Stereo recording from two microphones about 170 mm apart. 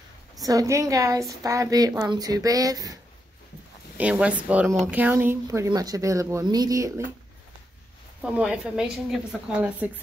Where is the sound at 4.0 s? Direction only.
5° right (ahead or behind).